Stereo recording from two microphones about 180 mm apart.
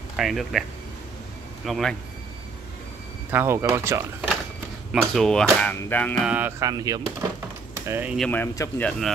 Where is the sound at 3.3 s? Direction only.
10° right (ahead or behind).